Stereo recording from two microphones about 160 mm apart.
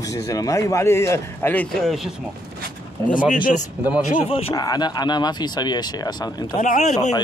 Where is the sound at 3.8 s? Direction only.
10° right (ahead or behind).